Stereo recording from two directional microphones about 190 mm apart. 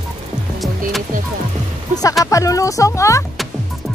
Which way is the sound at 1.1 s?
45° right (ahead or behind).